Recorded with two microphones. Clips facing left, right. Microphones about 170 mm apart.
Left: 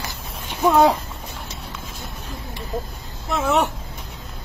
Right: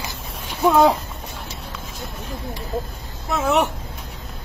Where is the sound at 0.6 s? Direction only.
5° left (ahead or behind).